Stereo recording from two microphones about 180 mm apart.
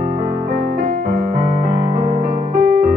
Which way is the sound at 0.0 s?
45° right (ahead or behind).